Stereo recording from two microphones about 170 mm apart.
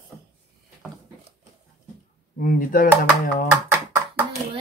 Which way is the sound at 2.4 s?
55° left (ahead or behind).